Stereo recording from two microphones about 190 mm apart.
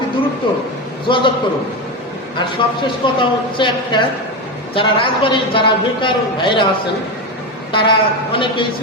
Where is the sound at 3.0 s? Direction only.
25° left (ahead or behind).